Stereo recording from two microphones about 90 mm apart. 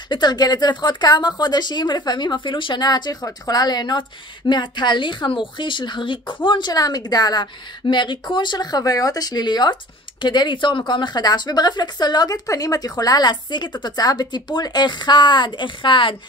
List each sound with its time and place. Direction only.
0.1 s speech: 50° left (ahead or behind)
6.7 s speech: 45° left (ahead or behind); by 16.2 s 65° left (ahead or behind)